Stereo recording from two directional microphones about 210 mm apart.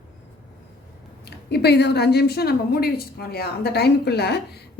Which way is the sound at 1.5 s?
50° left (ahead or behind).